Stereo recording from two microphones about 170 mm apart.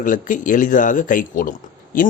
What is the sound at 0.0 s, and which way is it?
Speech, 50° left (ahead or behind).